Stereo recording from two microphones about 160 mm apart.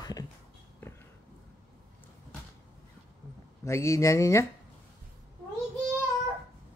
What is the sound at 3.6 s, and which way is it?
Speech, 20° left (ahead or behind).